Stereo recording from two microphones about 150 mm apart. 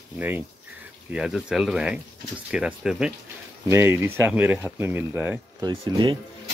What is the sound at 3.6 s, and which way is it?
Speech, 15° right (ahead or behind).